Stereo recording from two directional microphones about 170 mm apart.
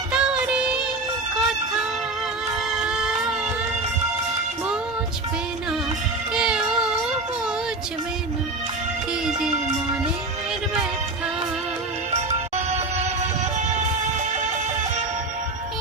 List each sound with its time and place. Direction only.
0.1 s music: 5° right (ahead or behind)
2.7 s music: 5° right (ahead or behind)
6.3 s music: 5° right (ahead or behind)
12.1 s music: 40° right (ahead or behind)